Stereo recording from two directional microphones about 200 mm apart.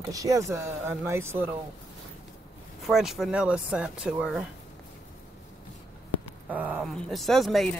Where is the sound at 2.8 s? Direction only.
Centre (ahead or behind).